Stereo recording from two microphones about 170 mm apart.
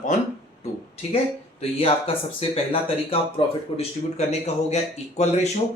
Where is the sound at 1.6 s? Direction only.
35° left (ahead or behind).